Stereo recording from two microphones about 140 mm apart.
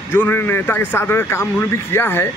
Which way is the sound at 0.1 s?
15° left (ahead or behind).